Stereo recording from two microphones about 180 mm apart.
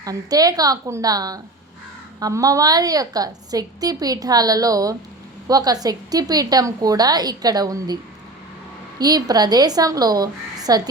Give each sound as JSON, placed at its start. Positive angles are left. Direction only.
{"t": 0.0, "sound": "a woman's voice", "side_deg": -20}
{"t": 9.0, "sound": "a woman's voice", "side_deg": -20}